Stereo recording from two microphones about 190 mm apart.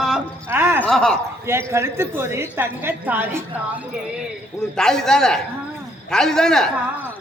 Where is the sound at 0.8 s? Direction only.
5° left (ahead or behind).